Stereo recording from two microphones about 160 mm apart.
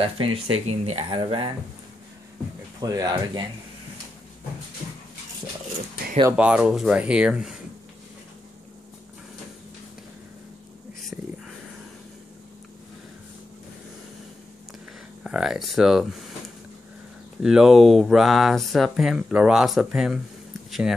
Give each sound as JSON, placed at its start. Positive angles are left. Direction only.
{"t": 0.0, "sound": "speech", "side_deg": -35}
{"t": 2.8, "sound": "speech", "side_deg": -20}
{"t": 6.3, "sound": "speech", "side_deg": -5}
{"t": 15.2, "sound": "speech", "side_deg": -5}